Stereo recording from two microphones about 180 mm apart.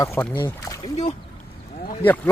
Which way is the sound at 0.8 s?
40° left (ahead or behind).